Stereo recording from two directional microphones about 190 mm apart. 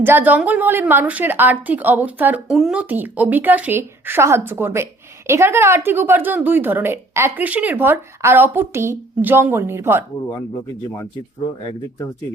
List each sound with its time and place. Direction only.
0.0 s a woman's voice: 10° right (ahead or behind)
10.2 s speech: 20° left (ahead or behind)